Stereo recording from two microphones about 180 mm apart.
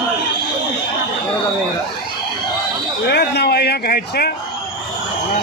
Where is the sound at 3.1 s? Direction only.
65° left (ahead or behind).